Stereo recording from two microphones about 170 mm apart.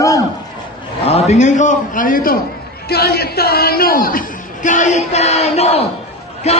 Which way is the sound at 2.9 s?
65° left (ahead or behind).